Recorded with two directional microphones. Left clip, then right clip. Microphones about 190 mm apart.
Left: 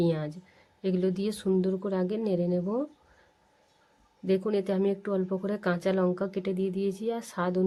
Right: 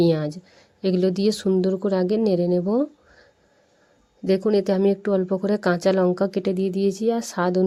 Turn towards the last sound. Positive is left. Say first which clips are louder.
# right 8 dB
turn(degrees=-30)  # may be behind; listen again after turning